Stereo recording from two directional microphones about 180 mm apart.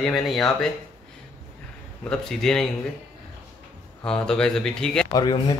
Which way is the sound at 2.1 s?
5° left (ahead or behind).